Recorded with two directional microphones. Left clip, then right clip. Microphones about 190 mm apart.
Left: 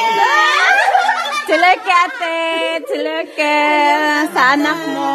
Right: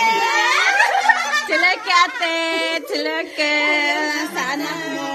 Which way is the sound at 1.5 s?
30° left (ahead or behind).